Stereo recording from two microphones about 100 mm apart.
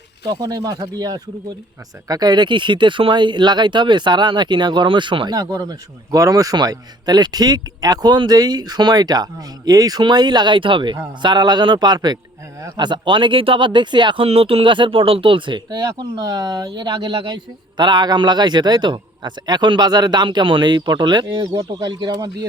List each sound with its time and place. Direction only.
0.3 s speech: 40° right (ahead or behind)
14.3 s speech: 70° right (ahead or behind); by 22.4 s 45° right (ahead or behind)